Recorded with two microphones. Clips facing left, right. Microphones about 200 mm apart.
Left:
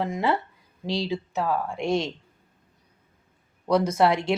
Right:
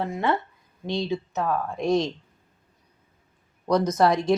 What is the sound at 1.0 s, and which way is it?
Speech, 15° left (ahead or behind).